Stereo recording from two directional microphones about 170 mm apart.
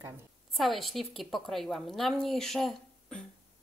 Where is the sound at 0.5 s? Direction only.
Centre (ahead or behind).